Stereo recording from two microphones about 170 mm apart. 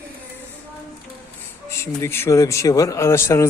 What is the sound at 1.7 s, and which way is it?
Speech, 15° left (ahead or behind).